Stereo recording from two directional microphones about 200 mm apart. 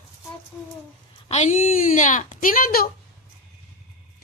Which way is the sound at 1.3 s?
35° left (ahead or behind).